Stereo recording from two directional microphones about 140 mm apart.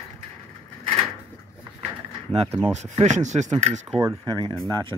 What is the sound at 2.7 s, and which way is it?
Speech, 55° right (ahead or behind).